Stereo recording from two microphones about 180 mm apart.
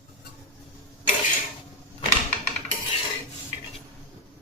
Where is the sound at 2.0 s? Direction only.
35° left (ahead or behind).